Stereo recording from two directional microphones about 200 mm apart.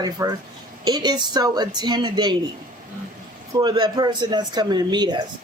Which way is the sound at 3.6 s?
20° right (ahead or behind).